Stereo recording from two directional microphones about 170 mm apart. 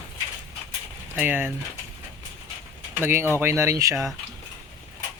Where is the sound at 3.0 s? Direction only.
15° right (ahead or behind).